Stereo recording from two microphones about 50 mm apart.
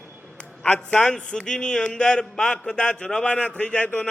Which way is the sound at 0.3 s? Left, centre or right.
Centre.